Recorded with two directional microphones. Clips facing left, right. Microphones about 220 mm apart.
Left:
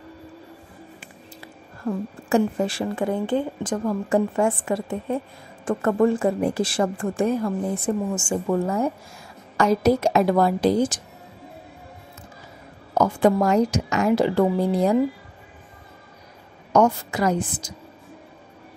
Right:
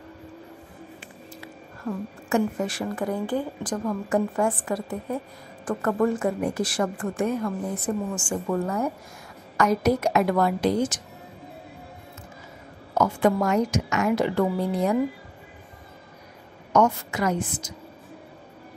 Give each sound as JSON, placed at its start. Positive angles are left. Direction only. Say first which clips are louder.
{"t": 2.2, "sound": "speech", "louder": "left 3 dB", "side_deg": 30}
{"t": 12.9, "sound": "a woman's voice", "louder": "left 3 dB", "side_deg": 30}
{"t": 16.7, "sound": "a woman's voice", "louder": "left 3 dB", "side_deg": 30}